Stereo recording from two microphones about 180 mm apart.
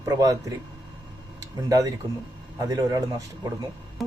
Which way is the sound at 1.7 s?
20° right (ahead or behind).